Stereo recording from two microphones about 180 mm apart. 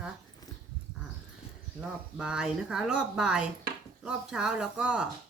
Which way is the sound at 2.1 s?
5° right (ahead or behind).